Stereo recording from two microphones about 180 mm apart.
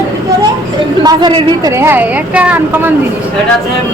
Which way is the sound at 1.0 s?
25° right (ahead or behind).